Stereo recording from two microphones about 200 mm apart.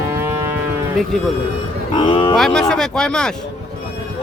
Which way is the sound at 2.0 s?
25° left (ahead or behind).